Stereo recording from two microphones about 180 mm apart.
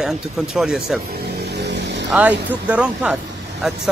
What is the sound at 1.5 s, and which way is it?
Vehicle, 70° right (ahead or behind).